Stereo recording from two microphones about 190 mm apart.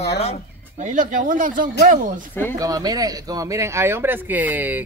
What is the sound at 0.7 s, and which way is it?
Speech, 40° right (ahead or behind).